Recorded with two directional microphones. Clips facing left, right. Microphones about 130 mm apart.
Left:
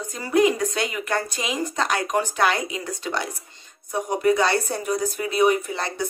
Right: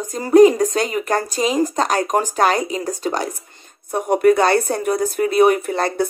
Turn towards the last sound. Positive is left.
turn(degrees=-50)  # may be behind; listen again after turning